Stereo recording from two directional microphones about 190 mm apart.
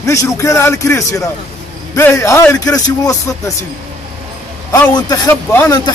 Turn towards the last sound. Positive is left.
turn(degrees=15)  # may be behind; listen again after turning